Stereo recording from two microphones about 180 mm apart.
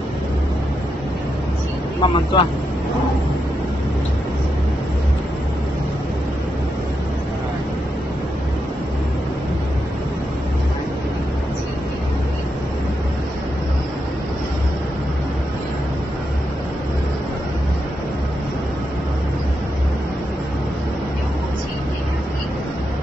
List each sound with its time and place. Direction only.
2.0 s speech: 25° left (ahead or behind)